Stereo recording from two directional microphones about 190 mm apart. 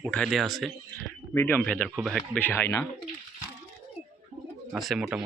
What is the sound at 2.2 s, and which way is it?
Speech, 10° left (ahead or behind).